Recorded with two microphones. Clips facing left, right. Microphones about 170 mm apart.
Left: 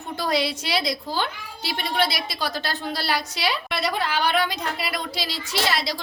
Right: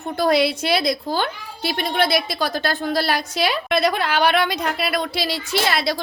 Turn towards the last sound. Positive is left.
turn(degrees=-55)  # may be behind; listen again after turning